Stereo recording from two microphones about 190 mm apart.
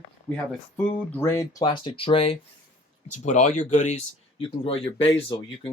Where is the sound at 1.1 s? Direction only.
15° left (ahead or behind).